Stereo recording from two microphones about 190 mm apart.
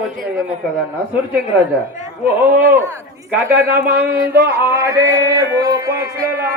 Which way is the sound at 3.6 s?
10° right (ahead or behind).